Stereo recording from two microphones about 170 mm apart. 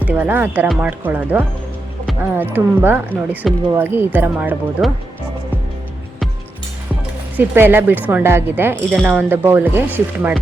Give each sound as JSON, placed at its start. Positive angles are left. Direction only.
{"t": 0.0, "sound": "speech", "side_deg": -10}
{"t": 3.4, "sound": "speech", "side_deg": 0}
{"t": 3.8, "sound": "speech", "side_deg": -10}
{"t": 7.3, "sound": "speech", "side_deg": -10}